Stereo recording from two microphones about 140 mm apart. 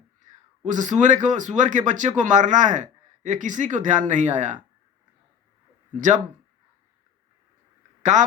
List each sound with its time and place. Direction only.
0.6 s speech: 60° right (ahead or behind)
6.0 s speech: 60° right (ahead or behind)
8.1 s speech: 60° right (ahead or behind)